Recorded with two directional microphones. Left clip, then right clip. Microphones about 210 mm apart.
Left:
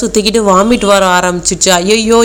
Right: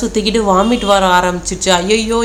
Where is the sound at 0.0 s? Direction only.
25° left (ahead or behind).